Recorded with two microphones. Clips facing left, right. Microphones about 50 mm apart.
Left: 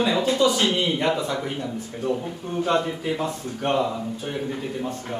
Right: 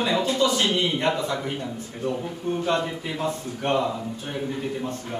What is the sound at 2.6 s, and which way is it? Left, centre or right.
A man's voice, centre.